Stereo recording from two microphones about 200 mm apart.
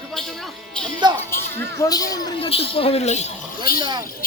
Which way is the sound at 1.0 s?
20° right (ahead or behind).